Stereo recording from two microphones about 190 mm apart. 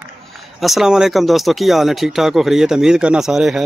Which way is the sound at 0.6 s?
Centre (ahead or behind).